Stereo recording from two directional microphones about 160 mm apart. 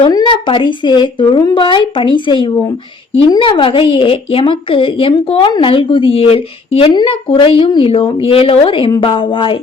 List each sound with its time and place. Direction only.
0.1 s a woman's voice: 30° left (ahead or behind)